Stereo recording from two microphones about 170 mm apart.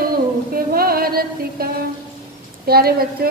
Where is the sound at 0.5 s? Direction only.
60° right (ahead or behind).